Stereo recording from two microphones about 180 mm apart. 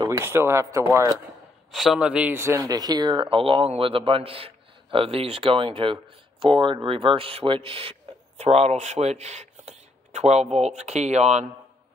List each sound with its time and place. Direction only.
0.2 s speech: 15° right (ahead or behind)
1.7 s speech: centre (ahead or behind); by 11.4 s 40° right (ahead or behind)